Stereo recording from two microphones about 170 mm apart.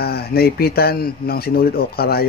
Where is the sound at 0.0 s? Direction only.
65° left (ahead or behind).